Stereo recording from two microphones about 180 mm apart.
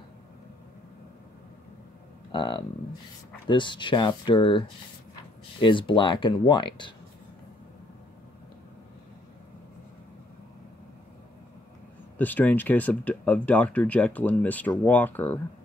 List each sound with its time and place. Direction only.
2.3 s speech: 25° left (ahead or behind)
12.2 s speech: 10° left (ahead or behind)